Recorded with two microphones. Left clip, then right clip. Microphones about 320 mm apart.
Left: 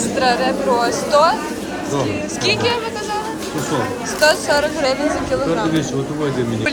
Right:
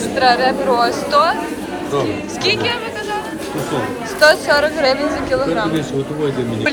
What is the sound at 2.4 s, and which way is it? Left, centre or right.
Music, centre.